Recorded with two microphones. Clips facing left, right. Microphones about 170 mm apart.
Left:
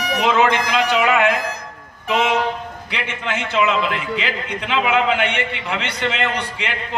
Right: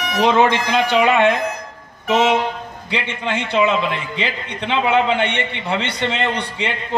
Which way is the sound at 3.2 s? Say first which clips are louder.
Right 2 dB; 30° right (ahead or behind).